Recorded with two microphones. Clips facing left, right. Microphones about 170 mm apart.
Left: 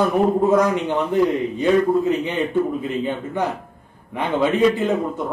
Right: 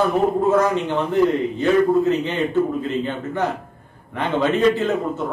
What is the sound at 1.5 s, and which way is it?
A man's voice, 15° left (ahead or behind).